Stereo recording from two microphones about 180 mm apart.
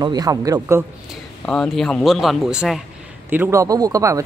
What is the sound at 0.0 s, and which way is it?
Speech, 20° right (ahead or behind).